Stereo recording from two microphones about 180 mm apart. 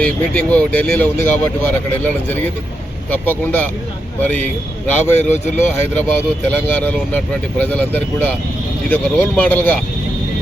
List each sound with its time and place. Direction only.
0.0 s speech: 5° left (ahead or behind)